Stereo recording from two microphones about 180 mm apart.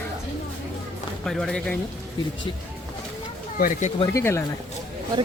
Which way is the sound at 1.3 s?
Centre (ahead or behind).